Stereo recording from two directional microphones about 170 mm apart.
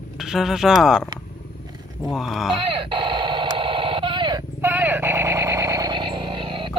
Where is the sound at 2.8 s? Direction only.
30° right (ahead or behind).